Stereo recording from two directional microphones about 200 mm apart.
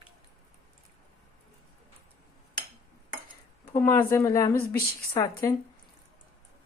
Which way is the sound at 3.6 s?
15° left (ahead or behind).